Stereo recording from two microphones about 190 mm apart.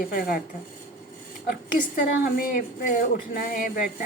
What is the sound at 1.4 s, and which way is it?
A woman's voice, 50° left (ahead or behind).